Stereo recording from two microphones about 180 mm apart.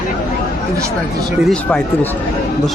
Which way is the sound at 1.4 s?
5° left (ahead or behind).